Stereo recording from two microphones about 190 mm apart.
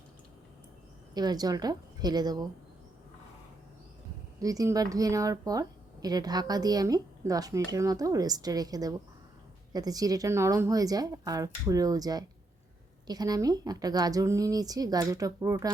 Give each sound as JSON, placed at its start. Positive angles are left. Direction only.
{"t": 1.1, "sound": "speech", "side_deg": -20}
{"t": 4.4, "sound": "speech", "side_deg": -20}